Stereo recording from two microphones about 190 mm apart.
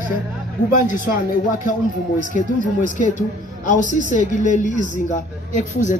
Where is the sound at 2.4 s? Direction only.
40° left (ahead or behind).